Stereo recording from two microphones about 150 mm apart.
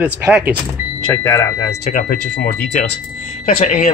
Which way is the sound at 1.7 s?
60° left (ahead or behind).